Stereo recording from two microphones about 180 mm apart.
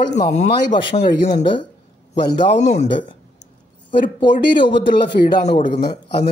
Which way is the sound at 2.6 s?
35° left (ahead or behind).